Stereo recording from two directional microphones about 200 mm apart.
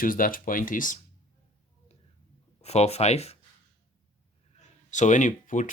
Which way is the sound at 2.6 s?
30° left (ahead or behind).